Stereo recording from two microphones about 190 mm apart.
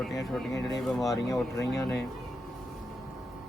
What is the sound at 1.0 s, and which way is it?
Speech, 15° left (ahead or behind).